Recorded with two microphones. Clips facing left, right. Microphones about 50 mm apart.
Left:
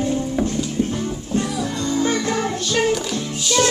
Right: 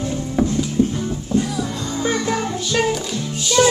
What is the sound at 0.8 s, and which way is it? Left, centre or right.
Music, left.